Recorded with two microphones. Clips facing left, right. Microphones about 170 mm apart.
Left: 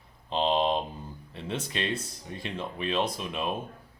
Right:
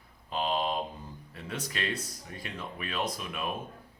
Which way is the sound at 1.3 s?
25° left (ahead or behind).